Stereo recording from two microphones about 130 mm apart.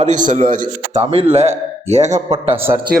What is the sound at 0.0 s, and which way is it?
A man's voice, 75° right (ahead or behind).